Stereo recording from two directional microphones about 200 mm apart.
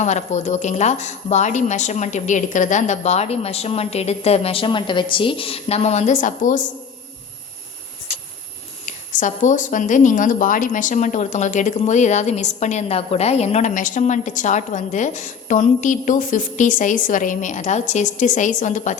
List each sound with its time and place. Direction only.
0.0 s speech: 35° left (ahead or behind)
8.9 s speech: 40° left (ahead or behind)